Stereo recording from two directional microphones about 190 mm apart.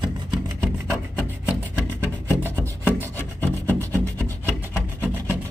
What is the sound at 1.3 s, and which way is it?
Music, 10° right (ahead or behind).